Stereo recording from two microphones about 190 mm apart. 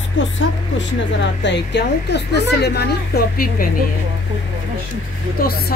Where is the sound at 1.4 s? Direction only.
65° left (ahead or behind).